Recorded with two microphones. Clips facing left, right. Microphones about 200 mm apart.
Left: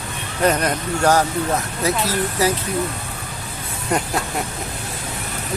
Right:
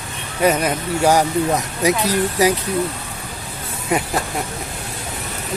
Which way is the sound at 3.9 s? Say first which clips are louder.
Right 1 dB; 5° right (ahead or behind).